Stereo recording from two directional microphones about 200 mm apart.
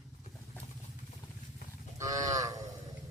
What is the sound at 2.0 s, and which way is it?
Cattle, 15° right (ahead or behind).